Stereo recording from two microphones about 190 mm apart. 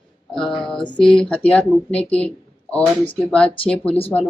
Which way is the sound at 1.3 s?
5° left (ahead or behind).